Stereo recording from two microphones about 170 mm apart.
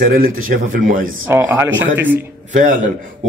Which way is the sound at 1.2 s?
15° right (ahead or behind).